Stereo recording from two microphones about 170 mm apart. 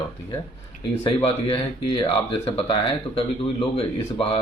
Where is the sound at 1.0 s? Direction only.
30° left (ahead or behind).